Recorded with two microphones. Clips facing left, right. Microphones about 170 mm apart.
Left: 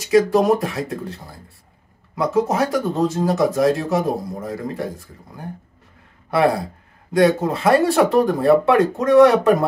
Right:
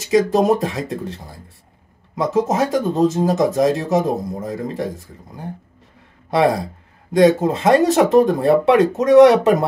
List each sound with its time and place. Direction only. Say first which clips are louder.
0.0 s speech: even; 20° right (ahead or behind)
7.1 s speech: right 3 dB; 20° right (ahead or behind)